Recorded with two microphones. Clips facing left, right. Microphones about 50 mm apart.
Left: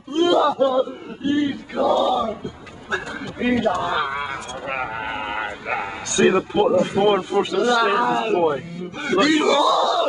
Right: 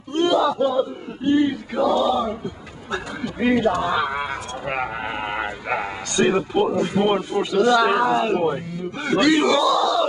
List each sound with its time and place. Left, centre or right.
0.1 s speech: centre
3.3 s speech: centre
6.3 s speech: centre
7.5 s speech: centre